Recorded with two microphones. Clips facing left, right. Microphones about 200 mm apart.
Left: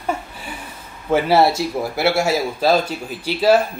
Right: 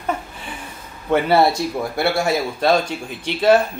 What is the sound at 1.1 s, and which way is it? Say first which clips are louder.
A man's voice: even; 5° left (ahead or behind).